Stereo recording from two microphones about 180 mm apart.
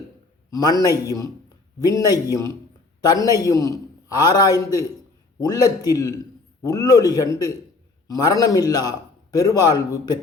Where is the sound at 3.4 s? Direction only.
20° left (ahead or behind).